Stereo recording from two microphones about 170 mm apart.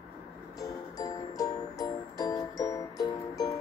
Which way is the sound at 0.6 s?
20° left (ahead or behind).